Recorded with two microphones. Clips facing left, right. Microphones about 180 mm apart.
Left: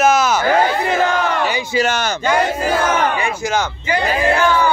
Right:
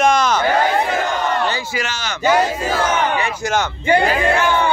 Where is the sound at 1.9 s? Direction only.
55° left (ahead or behind).